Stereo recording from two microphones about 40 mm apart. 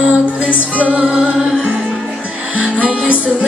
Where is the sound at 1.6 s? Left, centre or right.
Right.